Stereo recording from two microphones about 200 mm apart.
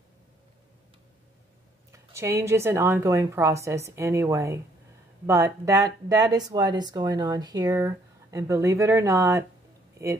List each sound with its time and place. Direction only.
1.9 s speech: 15° right (ahead or behind)